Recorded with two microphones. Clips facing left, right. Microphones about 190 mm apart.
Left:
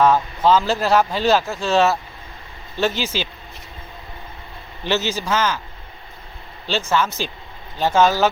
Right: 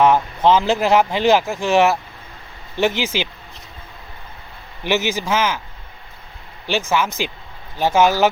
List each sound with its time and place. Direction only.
0.0 s speech: 20° right (ahead or behind)
4.8 s speech: 15° right (ahead or behind)
6.7 s speech: 10° right (ahead or behind)